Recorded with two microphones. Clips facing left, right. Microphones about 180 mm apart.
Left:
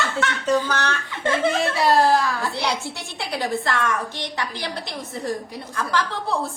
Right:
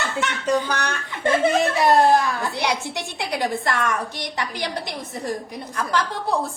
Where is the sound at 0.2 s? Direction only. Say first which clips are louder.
Even; 15° right (ahead or behind).